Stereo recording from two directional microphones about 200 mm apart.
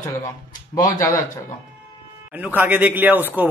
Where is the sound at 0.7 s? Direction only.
20° left (ahead or behind).